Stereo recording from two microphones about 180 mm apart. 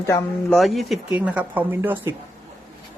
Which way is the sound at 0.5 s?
Centre (ahead or behind).